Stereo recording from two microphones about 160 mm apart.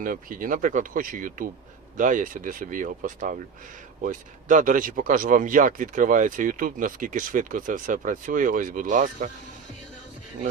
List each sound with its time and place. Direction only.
0.0 s speech: 60° right (ahead or behind)